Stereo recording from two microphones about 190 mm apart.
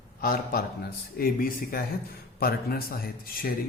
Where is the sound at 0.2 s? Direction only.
50° left (ahead or behind).